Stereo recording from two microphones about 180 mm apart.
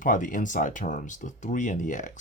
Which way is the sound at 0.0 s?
45° left (ahead or behind).